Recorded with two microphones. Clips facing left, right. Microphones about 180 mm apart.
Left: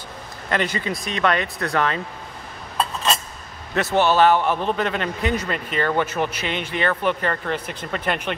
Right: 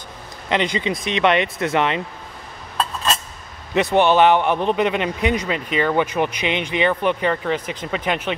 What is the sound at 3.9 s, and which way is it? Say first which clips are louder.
Speech: right 2 dB; 20° right (ahead or behind).